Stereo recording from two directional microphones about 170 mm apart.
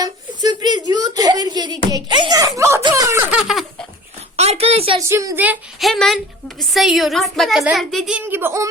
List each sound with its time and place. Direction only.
0.0 s a sound: 25° right (ahead or behind)
3.3 s baby laughter: centre (ahead or behind)
4.4 s a sound: 35° right (ahead or behind)
4.9 s a woman's voice: 20° right (ahead or behind)
5.9 s a child's voice: centre (ahead or behind)
8.2 s speech: 15° right (ahead or behind)